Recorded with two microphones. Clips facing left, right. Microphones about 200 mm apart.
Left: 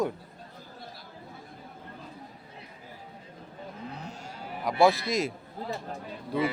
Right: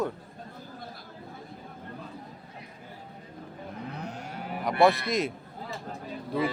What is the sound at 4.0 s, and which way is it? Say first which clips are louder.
Moo: right 4 dB; 60° right (ahead or behind).